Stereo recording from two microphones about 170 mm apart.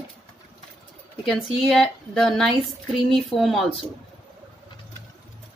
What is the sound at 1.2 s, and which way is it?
A woman's voice, centre (ahead or behind).